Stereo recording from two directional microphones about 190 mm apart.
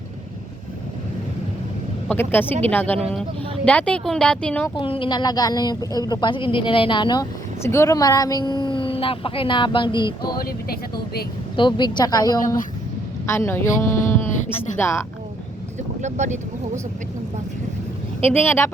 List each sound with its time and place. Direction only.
2.0 s a woman's voice: 10° left (ahead or behind)
4.7 s a woman's voice: 25° left (ahead or behind)
11.5 s a woman's voice: 25° left (ahead or behind)
14.3 s music: 40° left (ahead or behind)
14.8 s speech: 15° left (ahead or behind)
16.0 s speech: 40° right (ahead or behind)
18.2 s speech: 10° left (ahead or behind)